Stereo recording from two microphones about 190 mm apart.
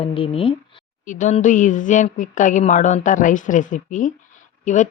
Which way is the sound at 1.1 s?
40° left (ahead or behind).